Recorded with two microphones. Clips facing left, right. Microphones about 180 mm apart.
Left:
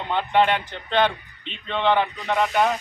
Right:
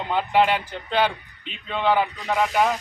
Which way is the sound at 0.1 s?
5° right (ahead or behind).